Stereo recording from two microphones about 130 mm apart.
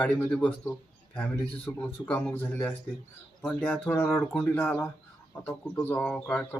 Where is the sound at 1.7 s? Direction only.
25° left (ahead or behind).